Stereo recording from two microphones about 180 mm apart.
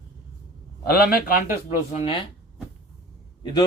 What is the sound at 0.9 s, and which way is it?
Speech, 55° left (ahead or behind).